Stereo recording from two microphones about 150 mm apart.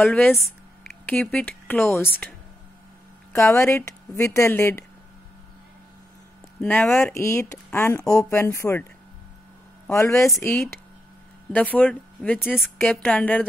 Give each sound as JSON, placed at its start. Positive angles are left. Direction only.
{"t": 0.0, "sound": "speech", "side_deg": 10}
{"t": 3.3, "sound": "a woman's voice", "side_deg": 20}
{"t": 6.6, "sound": "speech", "side_deg": 10}
{"t": 9.8, "sound": "a woman's voice", "side_deg": 20}
{"t": 11.5, "sound": "speech", "side_deg": 10}
{"t": 12.5, "sound": "a woman's voice", "side_deg": 0}
{"t": 12.9, "sound": "speech", "side_deg": 10}